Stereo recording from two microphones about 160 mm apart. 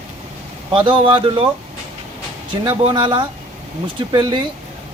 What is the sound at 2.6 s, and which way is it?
Speech, 30° right (ahead or behind).